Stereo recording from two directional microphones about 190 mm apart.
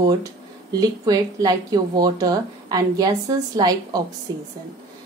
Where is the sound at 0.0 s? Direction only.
20° right (ahead or behind).